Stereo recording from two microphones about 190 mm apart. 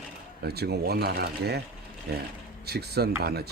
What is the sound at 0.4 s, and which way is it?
Speech, 55° right (ahead or behind).